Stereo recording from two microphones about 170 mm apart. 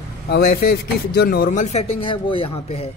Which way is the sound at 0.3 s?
65° left (ahead or behind).